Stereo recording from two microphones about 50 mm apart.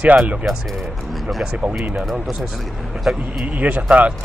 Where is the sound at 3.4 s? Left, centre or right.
Right.